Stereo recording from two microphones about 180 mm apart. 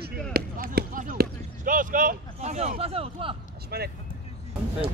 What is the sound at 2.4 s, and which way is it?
Speech, 35° right (ahead or behind).